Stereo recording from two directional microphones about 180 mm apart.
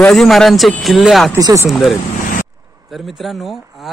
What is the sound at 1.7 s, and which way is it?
Speech, centre (ahead or behind).